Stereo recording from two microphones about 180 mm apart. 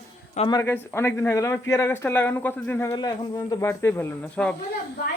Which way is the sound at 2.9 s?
25° left (ahead or behind).